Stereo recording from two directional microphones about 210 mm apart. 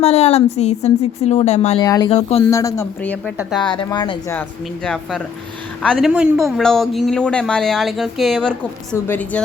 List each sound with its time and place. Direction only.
0.0 s a woman's voice: 30° left (ahead or behind)
1.8 s speech: 15° left (ahead or behind)
2.0 s speech: 30° left (ahead or behind)
2.4 s speech: 15° left (ahead or behind)
3.8 s speech: 20° left (ahead or behind)
4.4 s speech: 5° left (ahead or behind)